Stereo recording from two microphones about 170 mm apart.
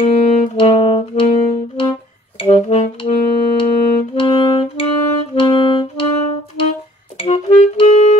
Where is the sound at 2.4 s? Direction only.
35° left (ahead or behind).